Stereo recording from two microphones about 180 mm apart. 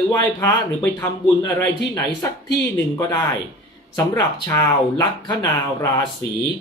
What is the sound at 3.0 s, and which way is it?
Speech, 20° left (ahead or behind).